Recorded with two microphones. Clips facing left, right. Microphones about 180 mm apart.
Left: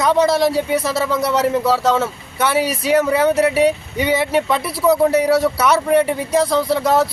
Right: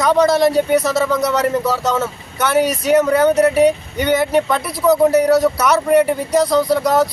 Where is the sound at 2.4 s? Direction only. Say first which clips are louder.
Right 2 dB; 5° left (ahead or behind).